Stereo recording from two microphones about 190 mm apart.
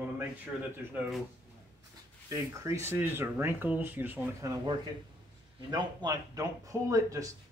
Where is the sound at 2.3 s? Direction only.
15° right (ahead or behind).